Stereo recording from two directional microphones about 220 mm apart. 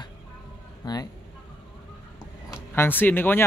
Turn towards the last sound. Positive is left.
turn(degrees=10)  # may be behind; listen again after turning